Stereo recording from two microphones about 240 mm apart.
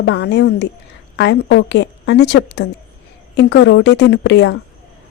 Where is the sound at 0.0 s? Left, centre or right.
Left.